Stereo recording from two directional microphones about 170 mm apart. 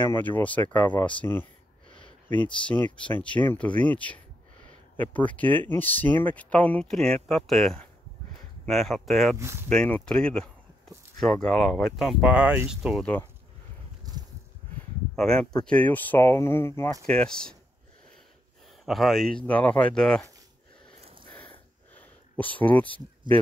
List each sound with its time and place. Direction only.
0.0 s speech: 10° left (ahead or behind)
1.9 s a sound: 30° left (ahead or behind)
2.6 s speech: 10° left (ahead or behind)
9.4 s speech: 15° right (ahead or behind)
9.7 s speech: 5° left (ahead or behind)
15.1 s speech: 5° left (ahead or behind)
17.0 s speech: 5° left (ahead or behind)
18.9 s speech: centre (ahead or behind)
21.0 s a sound: 30° right (ahead or behind)
21.9 s speech: 10° left (ahead or behind)